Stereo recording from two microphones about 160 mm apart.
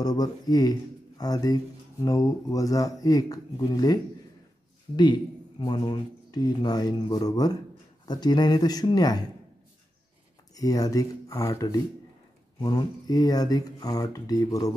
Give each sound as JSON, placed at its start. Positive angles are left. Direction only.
{"t": 0.0, "sound": "speech", "side_deg": 25}
{"t": 10.5, "sound": "speech", "side_deg": 25}